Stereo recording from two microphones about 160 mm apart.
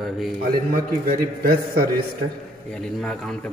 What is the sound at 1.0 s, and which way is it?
A man's voice, 65° right (ahead or behind).